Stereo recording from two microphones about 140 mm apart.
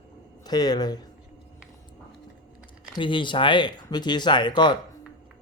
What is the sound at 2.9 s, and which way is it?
Speech, 35° left (ahead or behind).